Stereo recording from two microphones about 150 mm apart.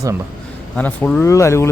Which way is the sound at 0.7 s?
10° left (ahead or behind).